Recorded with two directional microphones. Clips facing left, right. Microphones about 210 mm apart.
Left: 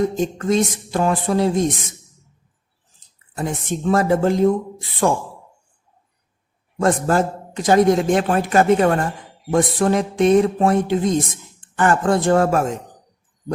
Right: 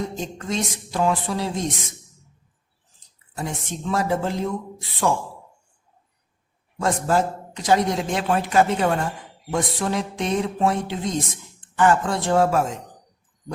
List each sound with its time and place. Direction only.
0.2 s a man's voice: 50° left (ahead or behind)
3.3 s a man's voice: 50° left (ahead or behind)
6.7 s a man's voice: 50° left (ahead or behind)